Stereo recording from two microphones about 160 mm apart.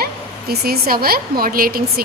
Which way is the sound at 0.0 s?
75° right (ahead or behind).